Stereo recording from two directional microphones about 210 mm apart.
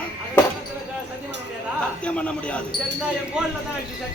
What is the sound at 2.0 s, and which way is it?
Speech, 5° left (ahead or behind).